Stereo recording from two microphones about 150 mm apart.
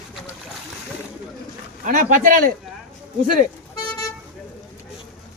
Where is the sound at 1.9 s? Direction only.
65° right (ahead or behind).